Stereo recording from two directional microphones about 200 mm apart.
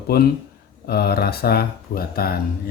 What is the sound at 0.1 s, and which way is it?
Speech, 50° left (ahead or behind).